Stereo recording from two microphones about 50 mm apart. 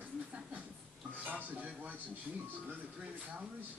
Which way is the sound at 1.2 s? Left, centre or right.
Right.